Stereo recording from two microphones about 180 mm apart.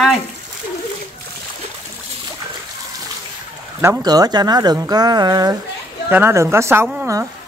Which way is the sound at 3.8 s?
20° right (ahead or behind).